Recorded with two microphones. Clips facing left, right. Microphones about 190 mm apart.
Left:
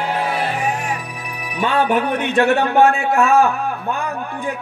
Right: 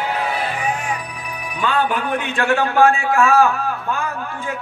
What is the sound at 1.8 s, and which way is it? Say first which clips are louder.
Speech: left 5 dB; 70° left (ahead or behind).